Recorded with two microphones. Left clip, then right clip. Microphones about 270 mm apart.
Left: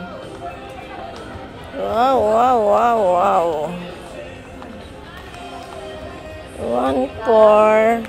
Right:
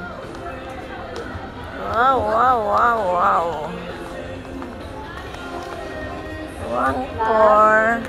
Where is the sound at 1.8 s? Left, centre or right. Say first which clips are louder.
Left 2 dB; left.